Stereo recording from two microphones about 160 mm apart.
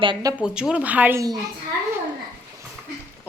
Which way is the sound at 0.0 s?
25° right (ahead or behind).